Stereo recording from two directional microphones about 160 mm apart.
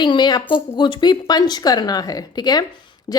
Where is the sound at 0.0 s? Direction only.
30° left (ahead or behind).